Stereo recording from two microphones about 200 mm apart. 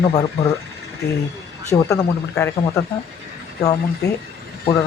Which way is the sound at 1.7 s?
15° left (ahead or behind).